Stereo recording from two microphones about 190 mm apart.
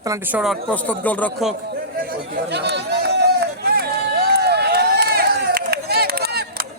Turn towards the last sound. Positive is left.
turn(degrees=-55)  # may be behind; listen again after turning